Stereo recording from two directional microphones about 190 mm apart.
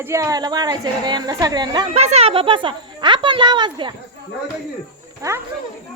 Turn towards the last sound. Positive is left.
turn(degrees=-15)  # may be behind; listen again after turning